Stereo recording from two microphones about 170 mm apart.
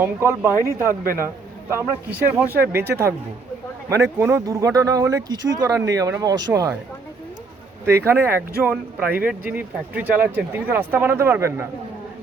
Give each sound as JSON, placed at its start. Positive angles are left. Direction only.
{"t": 0.0, "sound": "speech", "side_deg": -15}
{"t": 0.6, "sound": "speech", "side_deg": 15}
{"t": 1.7, "sound": "speech", "side_deg": -10}
{"t": 7.9, "sound": "speech", "side_deg": -15}